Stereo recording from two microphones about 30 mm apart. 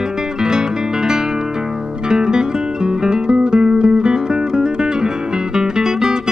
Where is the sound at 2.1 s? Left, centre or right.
Right.